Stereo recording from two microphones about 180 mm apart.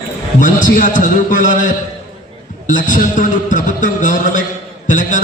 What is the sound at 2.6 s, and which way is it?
A man's voice, 45° left (ahead or behind).